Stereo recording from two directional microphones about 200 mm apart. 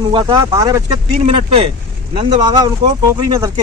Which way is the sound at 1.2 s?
30° right (ahead or behind).